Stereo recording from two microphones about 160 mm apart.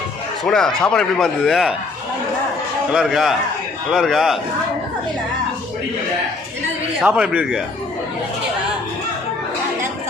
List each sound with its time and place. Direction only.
0.4 s speech: 5° left (ahead or behind)
2.9 s speech: 5° right (ahead or behind)
7.0 s a man's voice: 5° right (ahead or behind)